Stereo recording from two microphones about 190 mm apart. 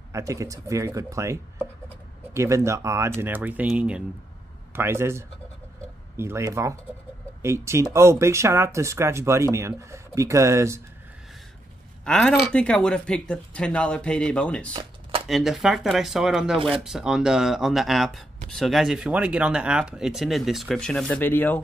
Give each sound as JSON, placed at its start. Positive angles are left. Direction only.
{"t": 0.1, "sound": "speech", "side_deg": -15}
{"t": 12.0, "sound": "speech", "side_deg": 5}
{"t": 14.7, "sound": "a sound", "side_deg": -25}
{"t": 15.2, "sound": "speech", "side_deg": 0}